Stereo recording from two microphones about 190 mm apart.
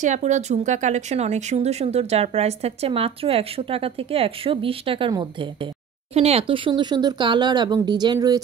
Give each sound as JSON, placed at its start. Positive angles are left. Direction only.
{"t": 0.0, "sound": "speech", "side_deg": -40}